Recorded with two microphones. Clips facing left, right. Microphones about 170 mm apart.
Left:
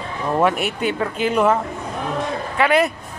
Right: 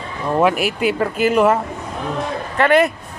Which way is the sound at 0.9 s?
5° right (ahead or behind).